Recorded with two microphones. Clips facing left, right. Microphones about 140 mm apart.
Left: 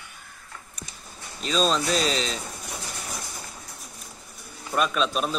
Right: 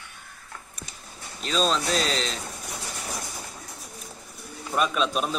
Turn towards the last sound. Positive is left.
turn(degrees=-5)  # may be behind; listen again after turning